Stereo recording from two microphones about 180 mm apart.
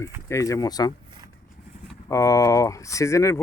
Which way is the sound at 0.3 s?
15° left (ahead or behind).